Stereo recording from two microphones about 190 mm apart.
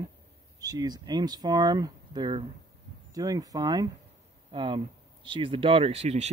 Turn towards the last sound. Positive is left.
turn(degrees=-35)  # may be behind; listen again after turning